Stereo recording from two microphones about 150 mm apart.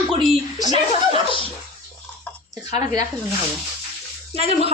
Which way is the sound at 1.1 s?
35° left (ahead or behind).